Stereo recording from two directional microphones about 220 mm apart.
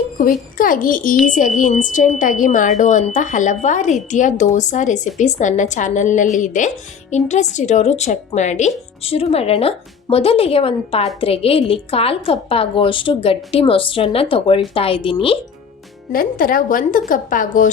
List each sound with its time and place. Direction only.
0.2 s speech: 40° left (ahead or behind)
16.1 s speech: 40° left (ahead or behind)